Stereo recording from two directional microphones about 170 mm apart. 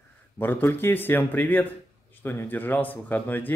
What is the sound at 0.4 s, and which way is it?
A man's voice, 10° left (ahead or behind).